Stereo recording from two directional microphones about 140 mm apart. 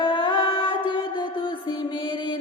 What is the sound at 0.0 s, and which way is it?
Music, 35° left (ahead or behind).